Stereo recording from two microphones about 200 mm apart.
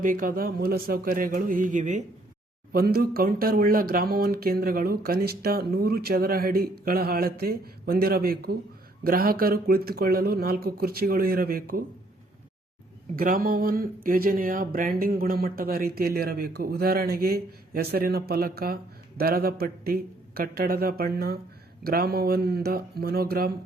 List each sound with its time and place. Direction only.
0.0 s speech: 45° right (ahead or behind)
13.1 s speech: 45° right (ahead or behind)